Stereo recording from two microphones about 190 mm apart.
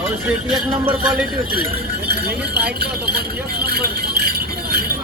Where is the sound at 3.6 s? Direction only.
50° right (ahead or behind).